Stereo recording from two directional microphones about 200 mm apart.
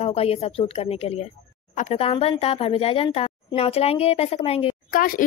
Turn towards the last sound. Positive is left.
turn(degrees=45)  # may be behind; listen again after turning